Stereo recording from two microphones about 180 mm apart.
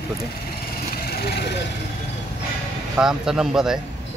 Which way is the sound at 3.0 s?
5° right (ahead or behind).